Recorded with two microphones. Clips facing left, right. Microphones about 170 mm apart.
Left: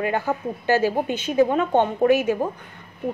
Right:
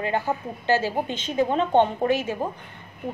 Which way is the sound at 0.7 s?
15° left (ahead or behind).